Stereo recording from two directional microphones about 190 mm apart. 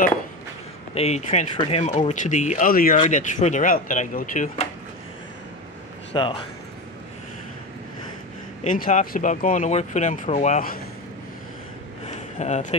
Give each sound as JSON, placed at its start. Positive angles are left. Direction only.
{"t": 0.9, "sound": "speech", "side_deg": 35}
{"t": 6.1, "sound": "speech", "side_deg": 25}
{"t": 8.6, "sound": "speech", "side_deg": 45}
{"t": 12.4, "sound": "speech", "side_deg": 35}